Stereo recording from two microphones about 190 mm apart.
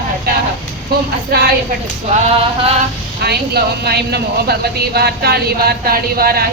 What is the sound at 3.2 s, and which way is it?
Speech, 60° right (ahead or behind).